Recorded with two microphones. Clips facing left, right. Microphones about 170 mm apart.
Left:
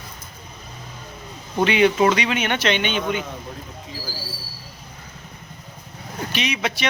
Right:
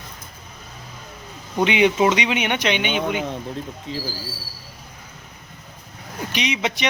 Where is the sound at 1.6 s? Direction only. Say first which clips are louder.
Left 1 dB; 20° right (ahead or behind).